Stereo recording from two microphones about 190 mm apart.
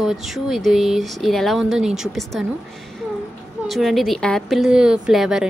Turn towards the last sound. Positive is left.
turn(degrees=0)  # may be behind; listen again after turning